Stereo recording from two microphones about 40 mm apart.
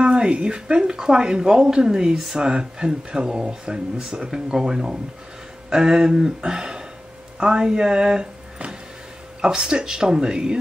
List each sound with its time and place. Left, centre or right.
0.0 s speech: right
9.4 s speech: centre